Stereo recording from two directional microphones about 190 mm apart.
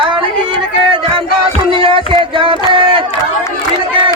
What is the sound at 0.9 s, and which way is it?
Music, 25° right (ahead or behind).